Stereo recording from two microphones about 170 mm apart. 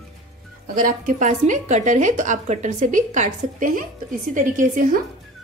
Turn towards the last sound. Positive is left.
turn(degrees=-50)  # may be behind; listen again after turning